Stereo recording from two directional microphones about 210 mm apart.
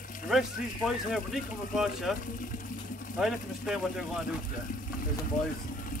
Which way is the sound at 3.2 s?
Centre (ahead or behind).